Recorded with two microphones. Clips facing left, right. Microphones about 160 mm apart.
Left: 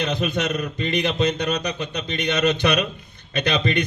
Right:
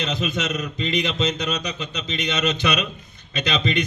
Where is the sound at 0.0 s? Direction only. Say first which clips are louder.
Left 2 dB; 55° left (ahead or behind).